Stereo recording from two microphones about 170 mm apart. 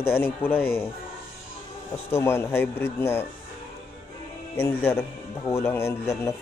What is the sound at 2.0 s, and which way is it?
Speech, 15° left (ahead or behind).